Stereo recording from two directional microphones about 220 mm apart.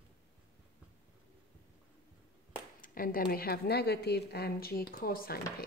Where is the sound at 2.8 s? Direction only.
40° left (ahead or behind).